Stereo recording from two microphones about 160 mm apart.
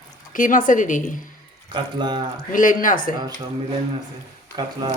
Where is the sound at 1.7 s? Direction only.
30° right (ahead or behind).